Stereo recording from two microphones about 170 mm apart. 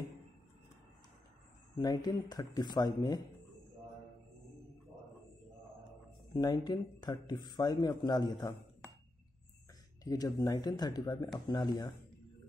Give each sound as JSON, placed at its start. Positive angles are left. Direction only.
{"t": 1.8, "sound": "speech", "side_deg": 20}
{"t": 6.3, "sound": "speech", "side_deg": 20}
{"t": 10.0, "sound": "speech", "side_deg": 20}